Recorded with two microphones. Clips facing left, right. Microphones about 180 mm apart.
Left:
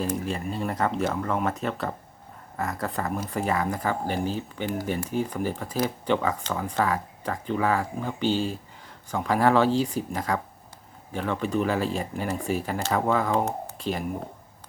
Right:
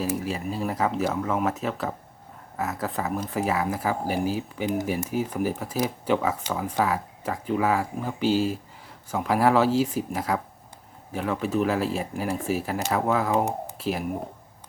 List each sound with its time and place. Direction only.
0.0 s speech: 5° right (ahead or behind)
13.3 s speech: 20° right (ahead or behind)
13.7 s speech: 5° right (ahead or behind)